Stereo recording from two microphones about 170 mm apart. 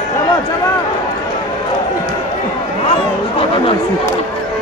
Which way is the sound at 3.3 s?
35° left (ahead or behind).